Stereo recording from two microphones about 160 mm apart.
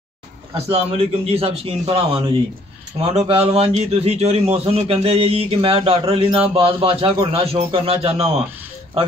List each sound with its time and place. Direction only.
0.7 s a man's voice: 35° right (ahead or behind)